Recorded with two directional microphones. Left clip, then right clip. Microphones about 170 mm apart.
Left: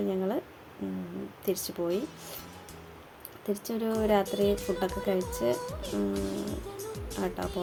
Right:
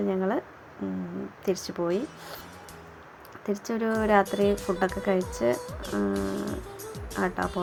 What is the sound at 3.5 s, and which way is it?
Speech, 5° right (ahead or behind).